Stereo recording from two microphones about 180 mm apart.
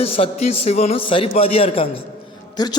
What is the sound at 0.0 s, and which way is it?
A man's voice, 35° left (ahead or behind).